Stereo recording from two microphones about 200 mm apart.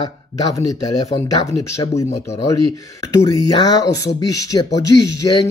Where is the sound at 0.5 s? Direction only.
20° left (ahead or behind).